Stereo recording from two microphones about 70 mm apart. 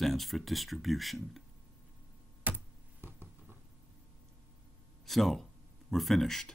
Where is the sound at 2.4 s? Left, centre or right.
Right.